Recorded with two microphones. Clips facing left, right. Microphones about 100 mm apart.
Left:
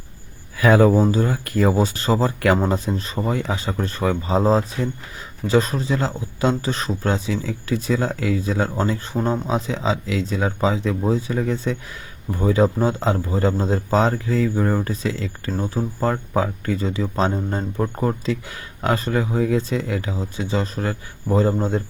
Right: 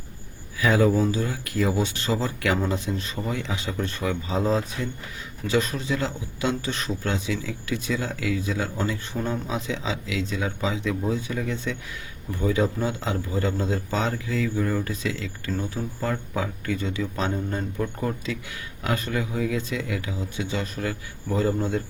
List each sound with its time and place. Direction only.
0.5 s speech: 55° left (ahead or behind)
0.9 s a man's voice: 40° left (ahead or behind)